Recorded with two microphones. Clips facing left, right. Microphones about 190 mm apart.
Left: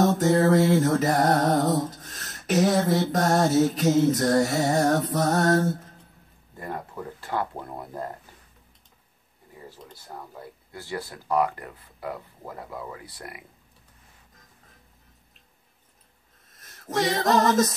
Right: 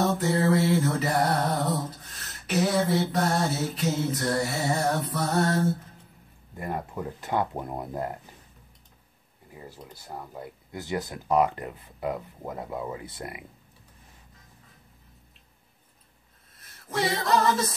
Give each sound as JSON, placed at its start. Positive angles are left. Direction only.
{"t": 0.2, "sound": "music", "side_deg": 45}
{"t": 6.6, "sound": "speech", "side_deg": -15}
{"t": 10.0, "sound": "speech", "side_deg": -20}
{"t": 16.8, "sound": "music", "side_deg": 45}